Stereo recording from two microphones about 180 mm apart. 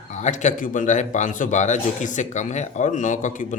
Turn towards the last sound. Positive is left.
turn(degrees=45)  # may be behind; listen again after turning